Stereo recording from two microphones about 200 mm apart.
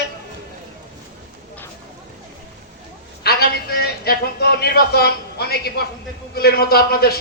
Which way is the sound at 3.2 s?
50° left (ahead or behind).